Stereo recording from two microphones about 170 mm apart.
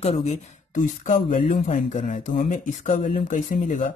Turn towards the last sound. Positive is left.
turn(degrees=45)  # may be behind; listen again after turning